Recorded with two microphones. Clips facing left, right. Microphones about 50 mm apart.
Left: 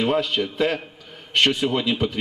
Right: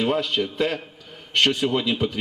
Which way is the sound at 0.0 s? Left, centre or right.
Centre.